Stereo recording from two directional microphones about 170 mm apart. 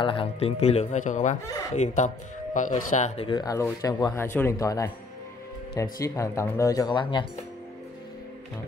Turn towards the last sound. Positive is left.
turn(degrees=25)  # may be behind; listen again after turning